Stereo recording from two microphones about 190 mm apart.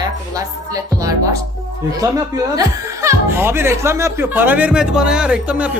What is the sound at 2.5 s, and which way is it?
Speech, 15° right (ahead or behind).